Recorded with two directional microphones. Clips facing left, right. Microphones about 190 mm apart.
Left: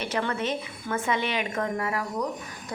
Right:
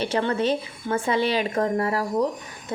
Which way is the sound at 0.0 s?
30° right (ahead or behind).